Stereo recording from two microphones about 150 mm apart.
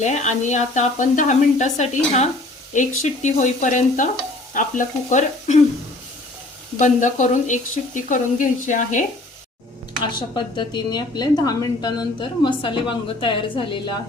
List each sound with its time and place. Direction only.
0.0 s speech: 50° left (ahead or behind)
6.7 s speech: 55° left (ahead or behind)
10.0 s a woman's voice: 30° left (ahead or behind)